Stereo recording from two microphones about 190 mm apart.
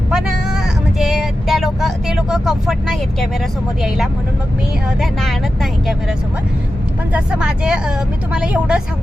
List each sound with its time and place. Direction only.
0.1 s vehicle: 5° right (ahead or behind)
3.8 s speech: centre (ahead or behind)
7.1 s speech: 5° right (ahead or behind)